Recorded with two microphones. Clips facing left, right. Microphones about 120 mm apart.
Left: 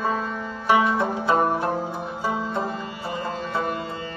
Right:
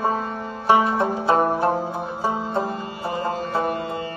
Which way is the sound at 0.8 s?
40° right (ahead or behind).